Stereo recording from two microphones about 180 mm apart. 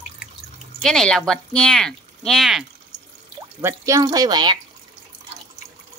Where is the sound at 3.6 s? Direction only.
15° right (ahead or behind).